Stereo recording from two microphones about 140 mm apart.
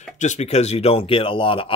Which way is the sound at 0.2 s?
55° left (ahead or behind).